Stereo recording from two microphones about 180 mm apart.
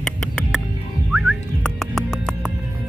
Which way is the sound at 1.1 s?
Centre (ahead or behind).